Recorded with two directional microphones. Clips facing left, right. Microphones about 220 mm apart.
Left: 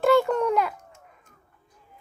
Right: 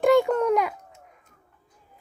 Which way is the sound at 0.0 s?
15° right (ahead or behind).